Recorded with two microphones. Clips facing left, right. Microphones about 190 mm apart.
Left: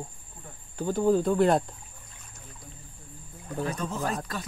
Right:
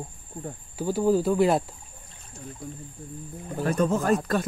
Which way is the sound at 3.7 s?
50° right (ahead or behind).